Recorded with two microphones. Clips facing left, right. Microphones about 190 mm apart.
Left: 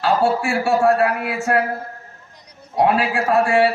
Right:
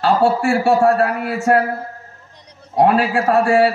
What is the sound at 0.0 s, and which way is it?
A man's voice, 40° right (ahead or behind).